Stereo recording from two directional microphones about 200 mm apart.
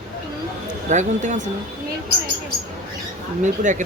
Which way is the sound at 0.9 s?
35° right (ahead or behind).